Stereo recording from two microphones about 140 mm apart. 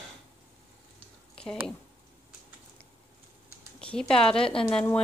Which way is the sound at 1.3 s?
5° left (ahead or behind).